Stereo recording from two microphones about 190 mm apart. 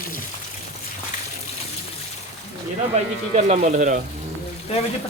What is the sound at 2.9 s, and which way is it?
Speech, 35° right (ahead or behind).